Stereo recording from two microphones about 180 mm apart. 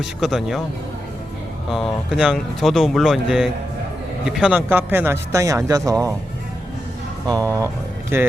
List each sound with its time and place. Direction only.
0.0 s speech: centre (ahead or behind)
1.7 s speech: centre (ahead or behind); by 6.1 s 20° right (ahead or behind)
7.3 s speech: 20° right (ahead or behind)